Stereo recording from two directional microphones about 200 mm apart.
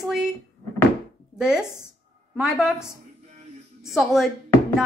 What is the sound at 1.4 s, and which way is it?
A woman's voice, 5° right (ahead or behind).